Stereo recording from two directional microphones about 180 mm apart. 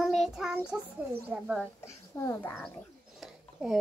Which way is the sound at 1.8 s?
15° left (ahead or behind).